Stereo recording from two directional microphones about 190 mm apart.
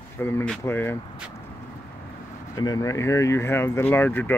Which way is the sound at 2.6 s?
20° left (ahead or behind).